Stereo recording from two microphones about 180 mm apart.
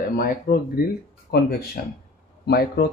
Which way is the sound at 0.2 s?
55° left (ahead or behind).